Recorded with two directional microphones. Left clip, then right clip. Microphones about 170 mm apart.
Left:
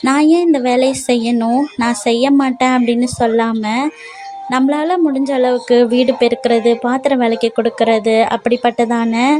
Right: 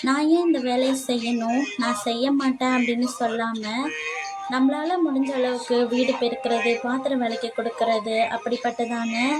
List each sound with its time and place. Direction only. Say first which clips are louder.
0.0 s speech: left 9 dB; 55° left (ahead or behind)